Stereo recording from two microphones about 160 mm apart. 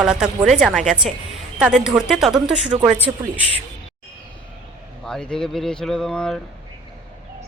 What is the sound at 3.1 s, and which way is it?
Speech, 15° right (ahead or behind).